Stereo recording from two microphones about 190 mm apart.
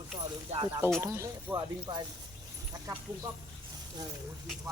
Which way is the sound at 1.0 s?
15° right (ahead or behind).